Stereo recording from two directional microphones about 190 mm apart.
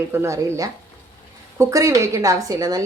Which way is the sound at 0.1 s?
15° right (ahead or behind).